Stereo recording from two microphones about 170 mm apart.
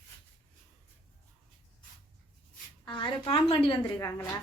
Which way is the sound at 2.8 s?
30° left (ahead or behind).